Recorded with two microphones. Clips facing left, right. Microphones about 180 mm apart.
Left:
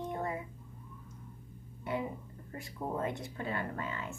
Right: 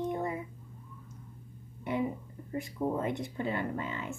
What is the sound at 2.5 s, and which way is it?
Speech, 20° right (ahead or behind).